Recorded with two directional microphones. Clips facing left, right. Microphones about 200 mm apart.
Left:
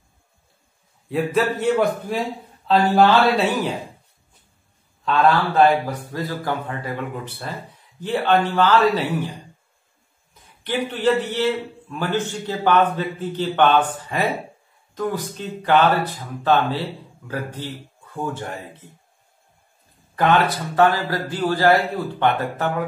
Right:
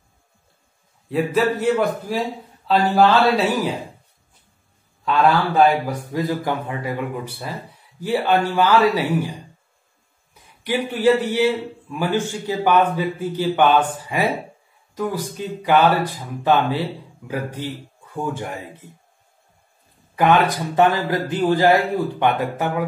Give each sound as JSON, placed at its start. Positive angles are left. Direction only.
{"t": 1.0, "sound": "a man's voice", "side_deg": 0}
{"t": 6.1, "sound": "a man's voice", "side_deg": -15}
{"t": 10.3, "sound": "a man's voice", "side_deg": -10}
{"t": 20.2, "sound": "a man's voice", "side_deg": -15}